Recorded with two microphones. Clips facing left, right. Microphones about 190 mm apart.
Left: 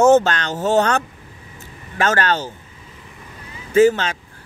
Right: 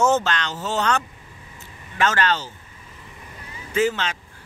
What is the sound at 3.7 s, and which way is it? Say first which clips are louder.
Speech: left 8 dB; 45° left (ahead or behind).